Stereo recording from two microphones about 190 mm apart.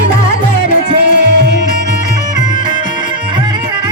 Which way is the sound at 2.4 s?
20° right (ahead or behind).